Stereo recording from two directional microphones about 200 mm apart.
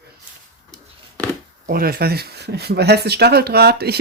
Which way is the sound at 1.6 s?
50° right (ahead or behind).